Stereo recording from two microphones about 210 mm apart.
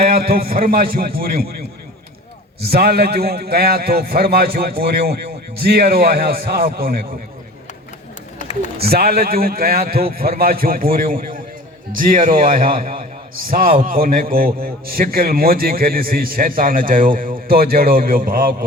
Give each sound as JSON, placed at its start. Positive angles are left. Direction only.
{"t": 0.0, "sound": "a man's voice", "side_deg": -45}
{"t": 2.6, "sound": "a man's voice", "side_deg": -50}
{"t": 8.8, "sound": "a man's voice", "side_deg": -45}